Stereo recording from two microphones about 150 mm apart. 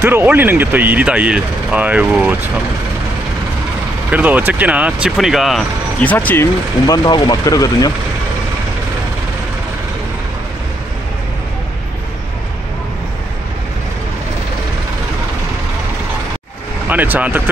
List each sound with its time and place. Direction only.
0.0 s speech: 15° right (ahead or behind)
4.1 s speech: 10° right (ahead or behind)
5.9 s speech: 10° left (ahead or behind)
16.9 s speech: 10° right (ahead or behind)